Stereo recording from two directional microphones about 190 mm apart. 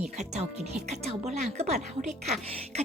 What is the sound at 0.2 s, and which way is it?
Speech, 35° right (ahead or behind).